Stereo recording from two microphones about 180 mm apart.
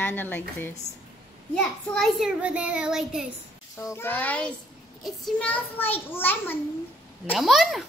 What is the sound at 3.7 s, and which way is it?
A woman's voice, 15° left (ahead or behind).